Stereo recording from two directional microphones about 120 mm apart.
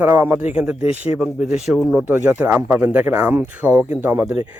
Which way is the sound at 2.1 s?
15° right (ahead or behind).